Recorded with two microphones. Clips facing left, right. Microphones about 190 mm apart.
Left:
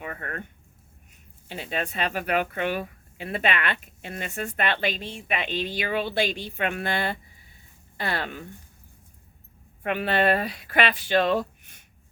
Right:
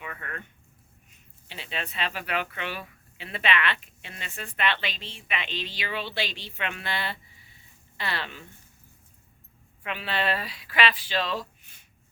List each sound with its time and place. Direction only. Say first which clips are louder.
0.0 s speech: left 4 dB; 45° left (ahead or behind)
9.8 s speech: left 7 dB; 50° left (ahead or behind)